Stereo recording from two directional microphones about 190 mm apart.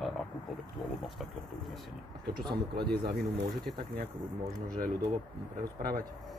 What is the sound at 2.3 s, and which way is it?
Speech, 25° right (ahead or behind).